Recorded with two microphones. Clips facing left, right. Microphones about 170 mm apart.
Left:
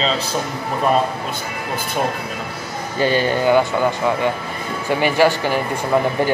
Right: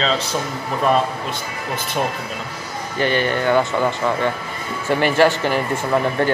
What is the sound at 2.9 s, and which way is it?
Speech, 10° left (ahead or behind).